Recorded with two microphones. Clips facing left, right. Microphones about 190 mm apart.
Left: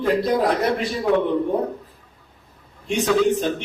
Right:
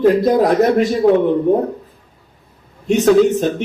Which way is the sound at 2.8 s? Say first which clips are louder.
Right 7 dB; 45° right (ahead or behind).